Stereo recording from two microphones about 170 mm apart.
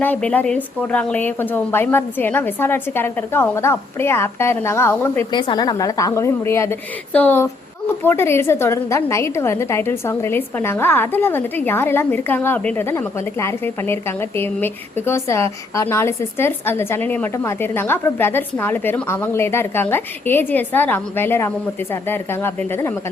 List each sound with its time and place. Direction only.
0.0 s a woman's voice: 10° left (ahead or behind)
5.3 s a woman's voice: 25° left (ahead or behind)